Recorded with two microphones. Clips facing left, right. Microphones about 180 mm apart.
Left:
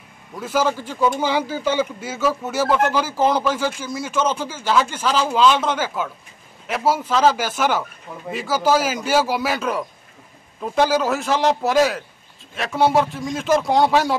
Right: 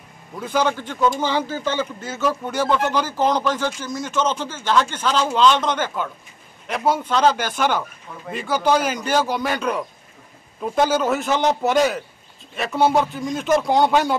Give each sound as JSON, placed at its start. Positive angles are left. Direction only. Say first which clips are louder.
{"t": 0.4, "sound": "a man's voice", "louder": "even", "side_deg": 5}